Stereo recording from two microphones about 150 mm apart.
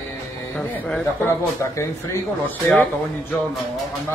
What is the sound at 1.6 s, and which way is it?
A man's voice, 20° left (ahead or behind).